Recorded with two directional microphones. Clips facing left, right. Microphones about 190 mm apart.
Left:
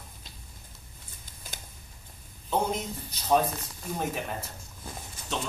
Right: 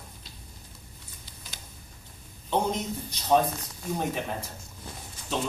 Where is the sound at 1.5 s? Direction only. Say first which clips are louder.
Left 3 dB; 50° left (ahead or behind).